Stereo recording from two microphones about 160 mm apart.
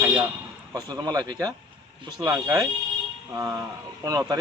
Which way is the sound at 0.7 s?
25° right (ahead or behind).